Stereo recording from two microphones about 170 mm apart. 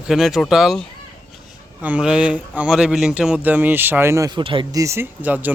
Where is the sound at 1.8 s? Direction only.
5° right (ahead or behind).